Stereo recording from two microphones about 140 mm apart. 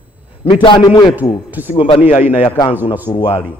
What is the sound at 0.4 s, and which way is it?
Speech, 40° left (ahead or behind).